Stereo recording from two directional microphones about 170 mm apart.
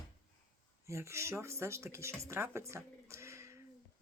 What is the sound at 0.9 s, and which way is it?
Speech, 15° right (ahead or behind).